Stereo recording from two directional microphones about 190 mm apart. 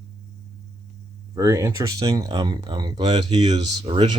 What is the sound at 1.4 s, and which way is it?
Speech, 15° right (ahead or behind).